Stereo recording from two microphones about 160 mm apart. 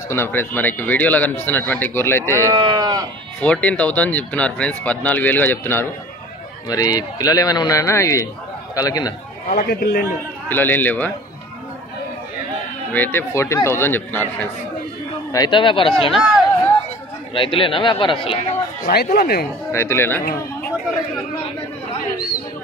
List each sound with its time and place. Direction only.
0.1 s speech: 15° left (ahead or behind)
2.2 s speech: 20° right (ahead or behind)
3.3 s a man's voice: 10° left (ahead or behind)
9.5 s a man's voice: 70° left (ahead or behind)
10.5 s speech: 10° left (ahead or behind)
12.9 s speech: 10° left (ahead or behind)
15.3 s speech: 30° left (ahead or behind)
16.1 s speech: 5° right (ahead or behind)
17.3 s speech: 35° left (ahead or behind)
19.1 s a man's voice: 75° left (ahead or behind)
19.7 s speech: 15° left (ahead or behind)